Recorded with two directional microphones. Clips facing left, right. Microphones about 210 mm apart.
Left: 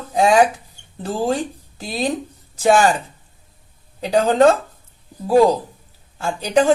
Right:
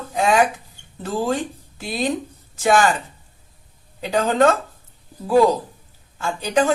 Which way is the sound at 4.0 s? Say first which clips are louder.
Left 3 dB; 35° left (ahead or behind).